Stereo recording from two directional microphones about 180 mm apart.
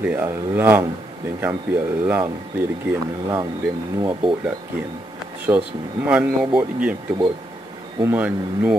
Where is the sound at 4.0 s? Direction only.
25° right (ahead or behind).